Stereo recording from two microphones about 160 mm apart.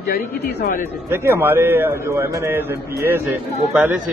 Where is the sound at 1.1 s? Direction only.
15° right (ahead or behind).